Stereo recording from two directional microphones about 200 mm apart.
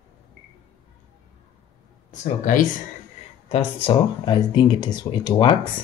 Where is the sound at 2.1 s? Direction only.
40° left (ahead or behind).